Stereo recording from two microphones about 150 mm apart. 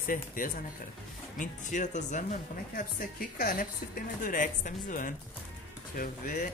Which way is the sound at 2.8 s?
70° left (ahead or behind).